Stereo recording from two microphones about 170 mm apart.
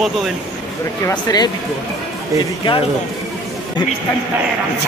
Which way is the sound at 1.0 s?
20° left (ahead or behind).